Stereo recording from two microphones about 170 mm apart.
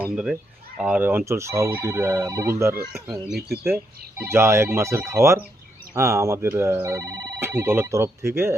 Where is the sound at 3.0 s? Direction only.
Centre (ahead or behind).